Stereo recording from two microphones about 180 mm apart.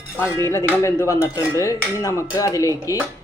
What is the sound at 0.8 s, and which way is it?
Dishes, 15° left (ahead or behind).